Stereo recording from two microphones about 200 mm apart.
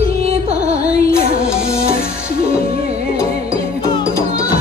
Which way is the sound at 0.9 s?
50° left (ahead or behind).